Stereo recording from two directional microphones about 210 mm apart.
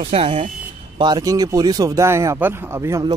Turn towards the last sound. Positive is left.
turn(degrees=-15)  # may be behind; listen again after turning